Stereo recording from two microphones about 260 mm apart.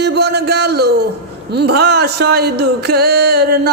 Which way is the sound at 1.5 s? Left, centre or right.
Right.